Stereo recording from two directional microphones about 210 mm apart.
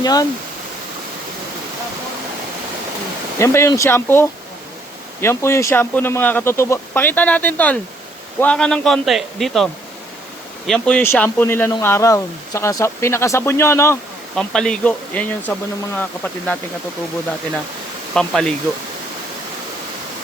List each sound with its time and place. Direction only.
0.0 s speech: 20° left (ahead or behind)
3.3 s a man's voice: 10° left (ahead or behind)
10.7 s speech: 5° left (ahead or behind)
18.1 s a man's voice: 5° left (ahead or behind)